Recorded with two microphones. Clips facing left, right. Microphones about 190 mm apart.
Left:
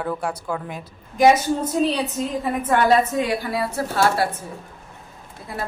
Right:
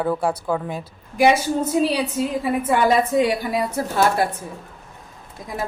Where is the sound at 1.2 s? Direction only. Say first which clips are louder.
Left 1 dB; 10° right (ahead or behind).